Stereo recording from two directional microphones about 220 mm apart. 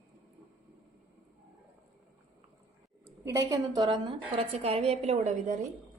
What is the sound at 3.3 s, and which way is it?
A woman's voice, 15° right (ahead or behind).